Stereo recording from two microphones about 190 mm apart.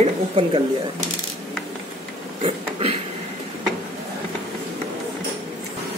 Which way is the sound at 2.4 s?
30° right (ahead or behind).